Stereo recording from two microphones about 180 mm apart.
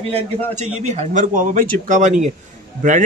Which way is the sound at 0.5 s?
40° right (ahead or behind).